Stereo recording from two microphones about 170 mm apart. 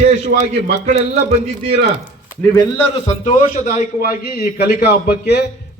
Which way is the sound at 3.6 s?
40° left (ahead or behind).